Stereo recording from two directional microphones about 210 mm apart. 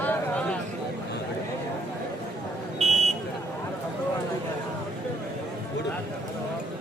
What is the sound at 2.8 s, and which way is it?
Buzzer, 30° right (ahead or behind).